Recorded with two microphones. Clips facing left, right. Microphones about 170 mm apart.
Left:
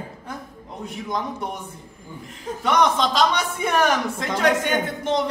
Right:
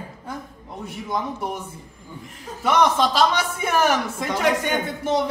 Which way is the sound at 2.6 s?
5° right (ahead or behind).